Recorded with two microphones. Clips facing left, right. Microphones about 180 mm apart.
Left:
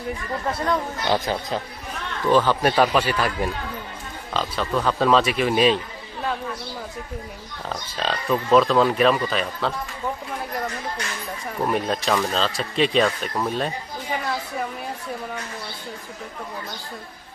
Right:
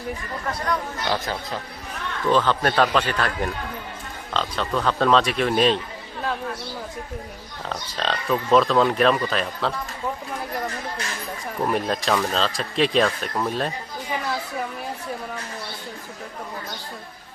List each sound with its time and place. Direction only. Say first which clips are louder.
0.5 s speech: left 1 dB; 25° left (ahead or behind)
2.3 s a man's voice: left 2 dB; 10° left (ahead or behind)
7.7 s speech: even; 5° left (ahead or behind)
11.6 s speech: even; centre (ahead or behind)